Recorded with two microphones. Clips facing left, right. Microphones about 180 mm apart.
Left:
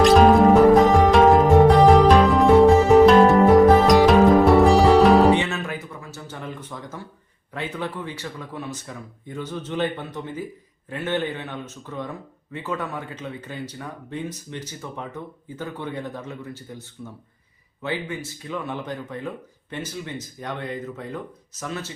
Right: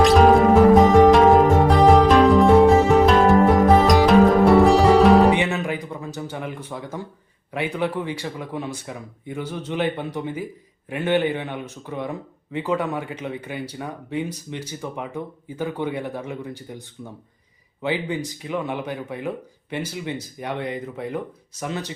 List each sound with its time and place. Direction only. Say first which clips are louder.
0.0 s music: even; centre (ahead or behind)
5.3 s a sound: even; 15° right (ahead or behind)
7.5 s speech: right 5 dB; 10° right (ahead or behind)
17.8 s speech: right 4 dB; 15° right (ahead or behind)